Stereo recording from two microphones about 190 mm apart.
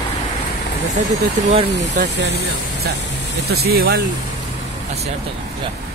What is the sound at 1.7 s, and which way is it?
Speech, 65° right (ahead or behind).